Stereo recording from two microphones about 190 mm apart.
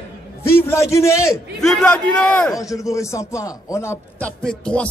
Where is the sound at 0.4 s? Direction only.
15° left (ahead or behind).